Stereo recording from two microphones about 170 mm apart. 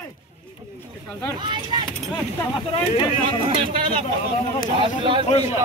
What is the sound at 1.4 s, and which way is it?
Speech, 25° right (ahead or behind).